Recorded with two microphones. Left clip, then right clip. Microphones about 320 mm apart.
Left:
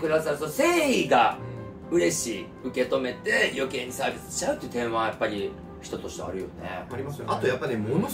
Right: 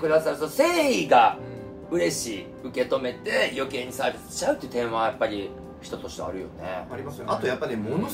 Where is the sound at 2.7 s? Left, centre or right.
Centre.